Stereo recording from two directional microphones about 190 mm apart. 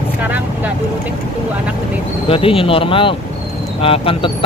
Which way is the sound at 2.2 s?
30° left (ahead or behind).